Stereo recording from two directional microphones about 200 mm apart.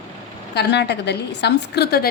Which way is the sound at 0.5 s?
60° left (ahead or behind).